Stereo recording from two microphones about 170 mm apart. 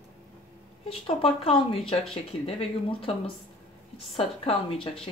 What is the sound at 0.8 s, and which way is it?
Speech, 35° left (ahead or behind).